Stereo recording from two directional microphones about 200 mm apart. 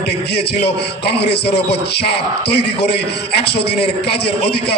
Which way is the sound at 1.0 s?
55° left (ahead or behind).